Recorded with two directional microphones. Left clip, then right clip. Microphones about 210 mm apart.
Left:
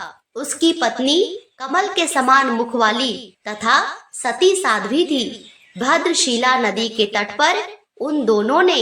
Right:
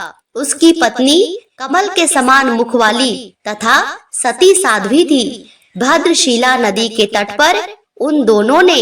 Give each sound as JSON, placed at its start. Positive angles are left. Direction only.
{"t": 0.0, "sound": "a woman's voice", "side_deg": -45}